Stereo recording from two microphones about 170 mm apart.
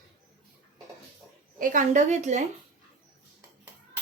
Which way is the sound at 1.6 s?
50° right (ahead or behind).